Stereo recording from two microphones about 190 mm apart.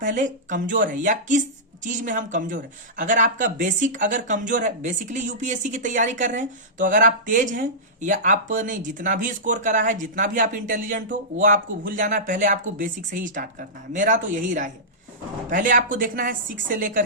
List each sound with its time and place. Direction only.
0.0 s speech: 45° right (ahead or behind)